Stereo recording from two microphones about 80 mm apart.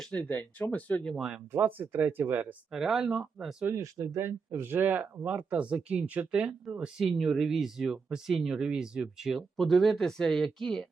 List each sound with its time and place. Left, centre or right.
0.1 s speech: centre
1.1 s speech: centre
1.5 s speech: right
2.7 s speech: centre
3.9 s speech: right; by 10.8 s centre